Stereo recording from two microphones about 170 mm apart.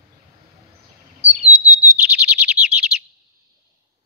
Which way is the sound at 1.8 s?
10° right (ahead or behind).